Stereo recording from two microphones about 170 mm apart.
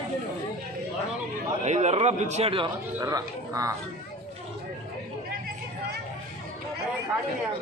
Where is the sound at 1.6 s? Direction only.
40° right (ahead or behind).